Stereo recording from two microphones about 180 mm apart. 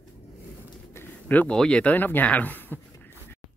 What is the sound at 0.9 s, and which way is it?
Speech, 10° left (ahead or behind).